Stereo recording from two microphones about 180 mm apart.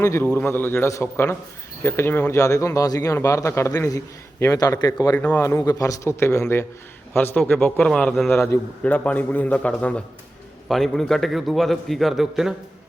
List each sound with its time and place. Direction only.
0.0 s a man's voice: 15° left (ahead or behind); by 12.5 s centre (ahead or behind)